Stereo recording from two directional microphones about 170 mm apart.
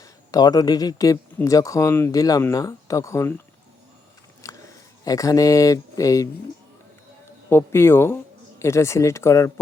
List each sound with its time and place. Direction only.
0.0 s speech: 20° left (ahead or behind)
4.4 s a sound: 20° left (ahead or behind)
7.5 s speech: 15° left (ahead or behind)